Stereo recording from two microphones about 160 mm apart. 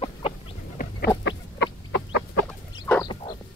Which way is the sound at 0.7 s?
85° left.